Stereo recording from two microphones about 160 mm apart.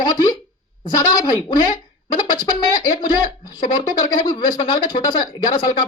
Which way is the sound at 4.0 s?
25° left (ahead or behind).